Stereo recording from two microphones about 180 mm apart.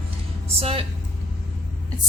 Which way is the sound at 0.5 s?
35° right (ahead or behind).